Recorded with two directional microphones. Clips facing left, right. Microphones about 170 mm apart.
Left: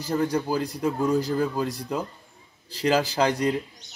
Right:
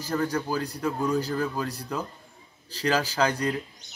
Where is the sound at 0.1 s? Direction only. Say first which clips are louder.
Left 3 dB; 15° left (ahead or behind).